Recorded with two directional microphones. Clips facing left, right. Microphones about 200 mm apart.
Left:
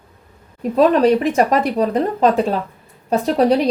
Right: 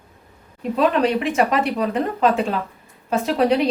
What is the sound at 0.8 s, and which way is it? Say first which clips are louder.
A woman's voice: left 6 dB; 40° left (ahead or behind).